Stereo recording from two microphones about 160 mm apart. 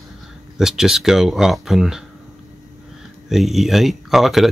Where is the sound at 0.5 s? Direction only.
5° right (ahead or behind).